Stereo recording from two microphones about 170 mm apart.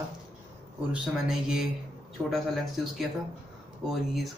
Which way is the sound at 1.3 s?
5° right (ahead or behind).